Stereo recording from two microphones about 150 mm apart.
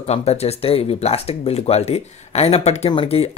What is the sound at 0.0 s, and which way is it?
Speech, 45° left (ahead or behind).